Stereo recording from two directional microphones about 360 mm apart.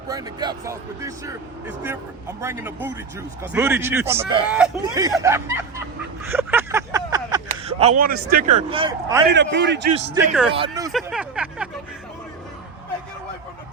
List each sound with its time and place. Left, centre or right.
0.1 s speech: centre
6.2 s a sound: centre; by 8.2 s right
8.3 s speech: right
9.3 s a man's voice: right
10.5 s speech: centre